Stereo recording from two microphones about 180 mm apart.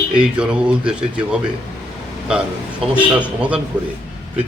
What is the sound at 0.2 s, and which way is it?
Speech, 5° right (ahead or behind).